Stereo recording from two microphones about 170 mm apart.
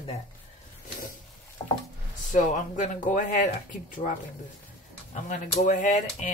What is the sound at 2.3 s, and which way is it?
Speech, 50° left (ahead or behind).